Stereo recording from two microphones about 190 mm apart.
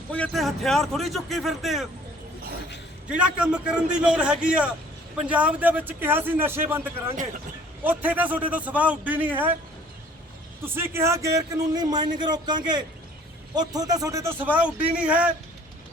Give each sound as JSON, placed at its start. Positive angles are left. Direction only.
{"t": 0.1, "sound": "speech", "side_deg": 5}
{"t": 3.1, "sound": "a man's voice", "side_deg": -5}
{"t": 7.9, "sound": "a man's voice", "side_deg": -10}
{"t": 10.6, "sound": "a man's voice", "side_deg": -10}